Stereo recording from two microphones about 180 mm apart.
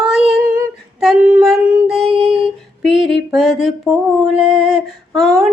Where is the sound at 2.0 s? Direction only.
30° right (ahead or behind).